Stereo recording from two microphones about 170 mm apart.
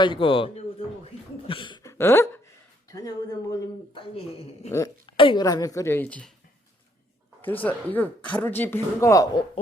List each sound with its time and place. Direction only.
0.0 s speech: 30° left (ahead or behind)
1.5 s hiccup: 30° left (ahead or behind)
2.9 s a woman's voice: 20° left (ahead or behind)
4.0 s speech: 35° left (ahead or behind)
4.7 s a woman's voice: 20° left (ahead or behind)
5.1 s a woman's voice: 30° left (ahead or behind); by 6.3 s 10° left (ahead or behind)
7.4 s speech: 10° left (ahead or behind)